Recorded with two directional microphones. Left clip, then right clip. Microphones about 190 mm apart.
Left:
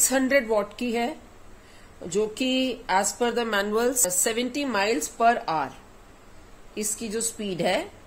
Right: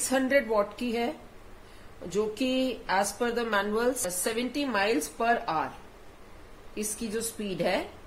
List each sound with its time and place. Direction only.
0.1 s speech: 40° left (ahead or behind)
6.7 s speech: 40° left (ahead or behind)